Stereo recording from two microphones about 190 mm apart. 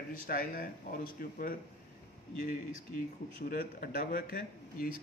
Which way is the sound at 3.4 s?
50° left (ahead or behind).